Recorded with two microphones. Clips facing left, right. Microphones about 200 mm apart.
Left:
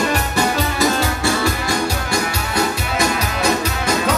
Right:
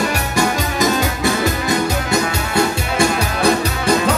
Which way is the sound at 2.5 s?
30° right (ahead or behind).